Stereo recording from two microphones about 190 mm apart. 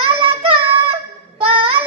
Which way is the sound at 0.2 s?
30° right (ahead or behind).